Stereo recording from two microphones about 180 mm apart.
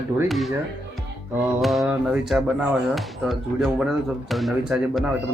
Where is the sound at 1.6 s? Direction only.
Centre (ahead or behind).